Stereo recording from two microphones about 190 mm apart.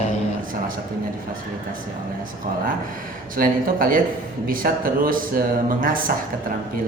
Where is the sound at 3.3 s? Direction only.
50° right (ahead or behind).